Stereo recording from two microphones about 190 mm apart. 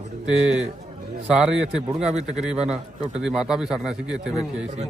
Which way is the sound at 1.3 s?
5° right (ahead or behind).